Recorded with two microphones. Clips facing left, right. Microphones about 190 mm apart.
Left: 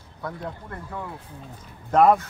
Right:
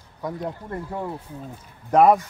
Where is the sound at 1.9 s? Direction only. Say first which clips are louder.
Right 2 dB; 10° right (ahead or behind).